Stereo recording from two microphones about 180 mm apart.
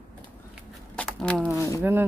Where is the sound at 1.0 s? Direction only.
5° left (ahead or behind).